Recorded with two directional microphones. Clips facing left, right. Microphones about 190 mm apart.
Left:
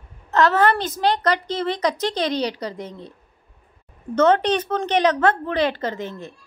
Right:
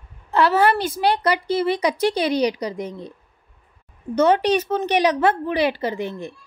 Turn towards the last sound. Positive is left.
turn(degrees=-15)  # may be behind; listen again after turning